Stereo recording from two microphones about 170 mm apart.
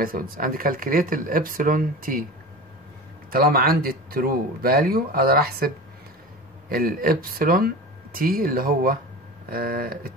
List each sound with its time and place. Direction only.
0.0 s speech: 55° right (ahead or behind)
3.3 s speech: 60° right (ahead or behind)
6.7 s speech: 60° right (ahead or behind)